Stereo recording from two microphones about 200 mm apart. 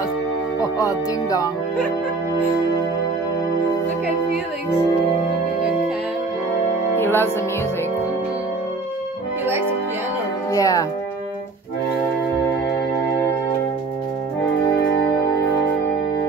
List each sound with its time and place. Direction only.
0.6 s speech: 15° left (ahead or behind)
7.0 s music: 10° left (ahead or behind)
9.5 s music: 10° right (ahead or behind)
10.5 s speech: 15° left (ahead or behind)